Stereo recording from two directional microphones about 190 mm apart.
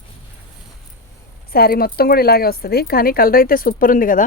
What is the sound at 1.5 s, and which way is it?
Speech, 50° left (ahead or behind).